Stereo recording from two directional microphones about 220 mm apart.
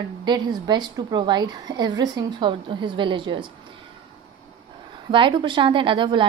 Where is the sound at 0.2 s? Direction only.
20° right (ahead or behind).